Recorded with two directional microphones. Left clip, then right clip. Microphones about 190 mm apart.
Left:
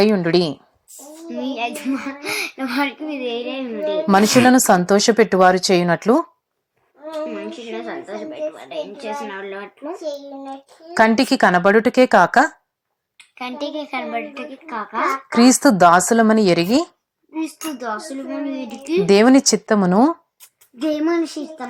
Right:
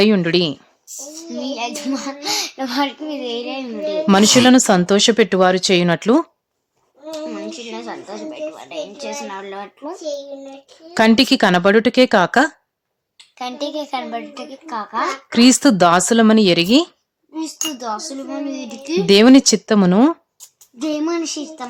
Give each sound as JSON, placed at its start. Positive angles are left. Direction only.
{"t": 0.0, "sound": "speech", "side_deg": -25}
{"t": 0.3, "sound": "a child's voice", "side_deg": 0}
{"t": 4.4, "sound": "speech", "side_deg": -30}
{"t": 7.1, "sound": "a child's voice", "side_deg": 5}
{"t": 10.5, "sound": "speech", "side_deg": -30}
{"t": 13.4, "sound": "a woman's voice", "side_deg": 5}
{"t": 15.3, "sound": "speech", "side_deg": -30}
{"t": 17.3, "sound": "a child's voice", "side_deg": 0}
{"t": 19.0, "sound": "speech", "side_deg": -30}
{"t": 20.7, "sound": "a child's voice", "side_deg": 0}
{"t": 21.1, "sound": "a woman's voice", "side_deg": 15}